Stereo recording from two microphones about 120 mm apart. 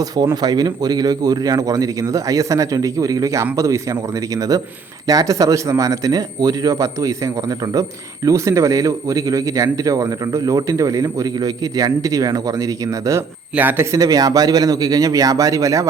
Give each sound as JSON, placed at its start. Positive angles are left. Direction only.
{"t": 0.4, "sound": "a man's voice", "side_deg": -35}
{"t": 13.6, "sound": "a man's voice", "side_deg": -15}
{"t": 13.9, "sound": "a man's voice", "side_deg": -30}